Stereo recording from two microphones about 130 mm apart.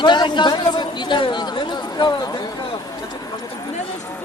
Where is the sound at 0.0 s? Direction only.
35° left (ahead or behind).